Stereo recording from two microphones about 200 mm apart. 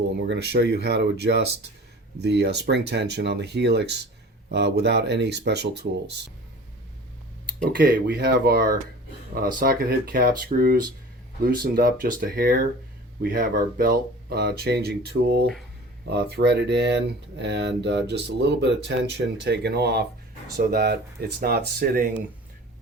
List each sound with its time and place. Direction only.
0.3 s speech: 55° right (ahead or behind)
7.8 s speech: 55° right (ahead or behind)